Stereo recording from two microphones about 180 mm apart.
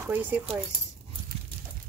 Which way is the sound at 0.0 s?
10° right (ahead or behind).